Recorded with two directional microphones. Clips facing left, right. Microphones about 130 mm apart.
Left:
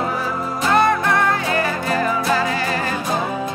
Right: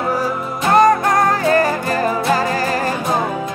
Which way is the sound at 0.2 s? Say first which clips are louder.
Right 2 dB; 40° right (ahead or behind).